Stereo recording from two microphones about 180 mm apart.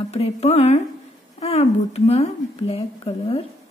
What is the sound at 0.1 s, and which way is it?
A woman's voice, 35° left (ahead or behind).